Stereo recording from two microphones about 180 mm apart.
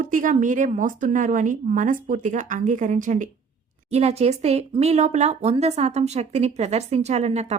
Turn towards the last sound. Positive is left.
turn(degrees=-35)  # may be behind; listen again after turning